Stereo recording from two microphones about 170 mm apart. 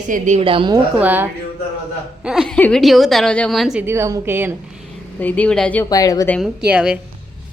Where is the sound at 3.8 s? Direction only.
15° right (ahead or behind).